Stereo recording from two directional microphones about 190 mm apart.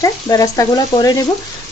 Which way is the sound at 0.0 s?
15° left (ahead or behind).